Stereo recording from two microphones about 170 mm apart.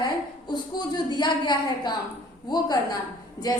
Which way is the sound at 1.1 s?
25° left (ahead or behind).